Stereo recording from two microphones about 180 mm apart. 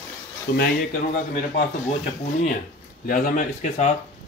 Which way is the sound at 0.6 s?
55° left (ahead or behind).